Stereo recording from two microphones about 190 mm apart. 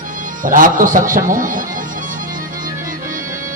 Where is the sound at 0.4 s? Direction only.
45° right (ahead or behind).